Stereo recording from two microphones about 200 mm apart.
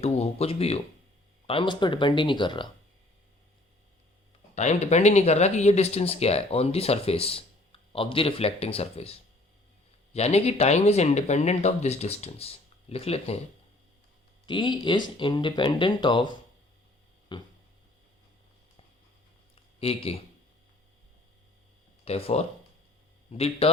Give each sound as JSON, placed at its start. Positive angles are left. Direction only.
{"t": 0.0, "sound": "speech", "side_deg": 30}
{"t": 4.5, "sound": "speech", "side_deg": 35}
{"t": 14.4, "sound": "speech", "side_deg": 25}
{"t": 19.8, "sound": "speech", "side_deg": 30}
{"t": 22.0, "sound": "speech", "side_deg": 30}